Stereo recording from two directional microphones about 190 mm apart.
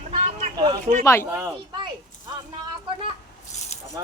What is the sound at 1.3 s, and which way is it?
Speech, 15° right (ahead or behind).